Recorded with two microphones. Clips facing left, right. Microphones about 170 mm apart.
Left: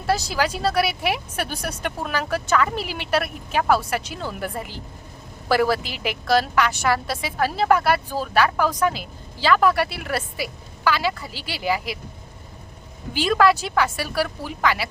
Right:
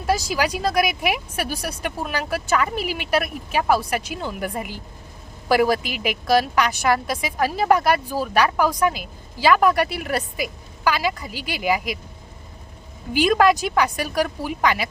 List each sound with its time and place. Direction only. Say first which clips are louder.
0.0 s speech: right 1 dB; 10° right (ahead or behind)
13.1 s speech: right 2 dB; 15° right (ahead or behind)